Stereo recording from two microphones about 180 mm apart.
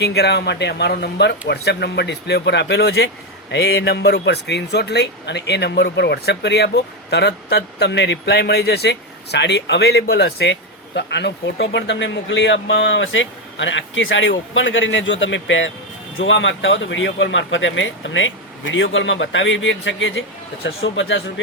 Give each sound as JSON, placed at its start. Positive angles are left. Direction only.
{"t": 0.0, "sound": "speech", "side_deg": 65}